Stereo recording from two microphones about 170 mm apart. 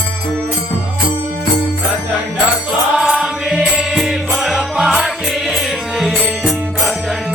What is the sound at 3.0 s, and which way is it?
Music, centre (ahead or behind).